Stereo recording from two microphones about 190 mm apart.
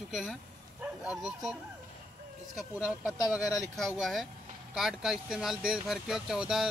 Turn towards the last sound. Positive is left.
turn(degrees=-5)  # may be behind; listen again after turning